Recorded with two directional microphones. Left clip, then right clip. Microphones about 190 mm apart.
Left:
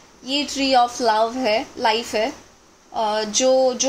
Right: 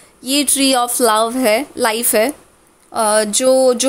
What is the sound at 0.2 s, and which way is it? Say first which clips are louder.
Speech: right 6 dB; 55° right (ahead or behind).